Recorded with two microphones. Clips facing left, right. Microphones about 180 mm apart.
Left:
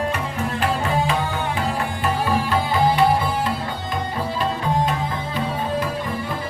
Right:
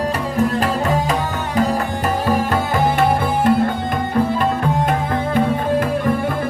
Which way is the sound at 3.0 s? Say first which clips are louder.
Right 2 dB; 50° right (ahead or behind).